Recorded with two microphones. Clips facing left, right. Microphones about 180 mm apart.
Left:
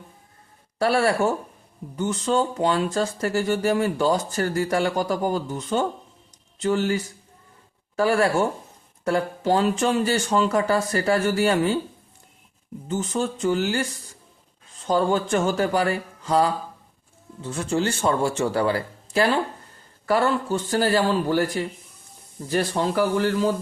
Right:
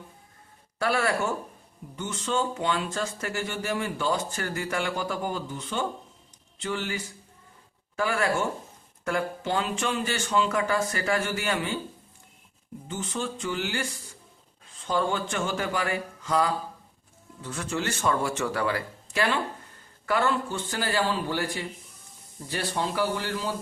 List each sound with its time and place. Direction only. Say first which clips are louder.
0.8 s speech: left 6 dB; 35° left (ahead or behind)
12.9 s speech: left 7 dB; 40° left (ahead or behind)